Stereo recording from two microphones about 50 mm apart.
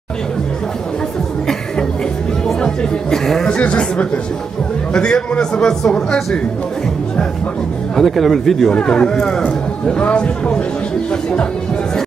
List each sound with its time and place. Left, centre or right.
2.4 s speech: centre
3.4 s a man's voice: left
7.9 s a man's voice: centre; by 10.5 s left